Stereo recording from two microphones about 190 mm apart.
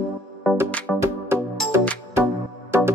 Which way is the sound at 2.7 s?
15° right (ahead or behind).